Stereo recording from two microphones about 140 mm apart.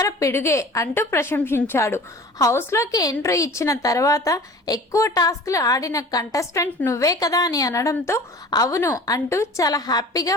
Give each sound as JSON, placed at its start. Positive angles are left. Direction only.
{"t": 0.0, "sound": "a woman's voice", "side_deg": 20}